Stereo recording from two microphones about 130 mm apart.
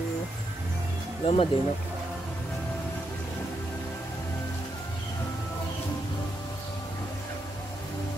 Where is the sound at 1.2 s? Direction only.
45° left (ahead or behind).